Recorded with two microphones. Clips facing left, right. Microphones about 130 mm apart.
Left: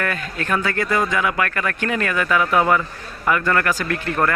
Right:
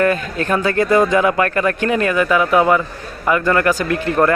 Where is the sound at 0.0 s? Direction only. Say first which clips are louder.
Right 8 dB; 25° right (ahead or behind).